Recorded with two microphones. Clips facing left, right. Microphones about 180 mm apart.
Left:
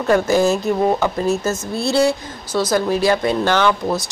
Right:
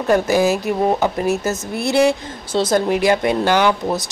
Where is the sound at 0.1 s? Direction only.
10° right (ahead or behind).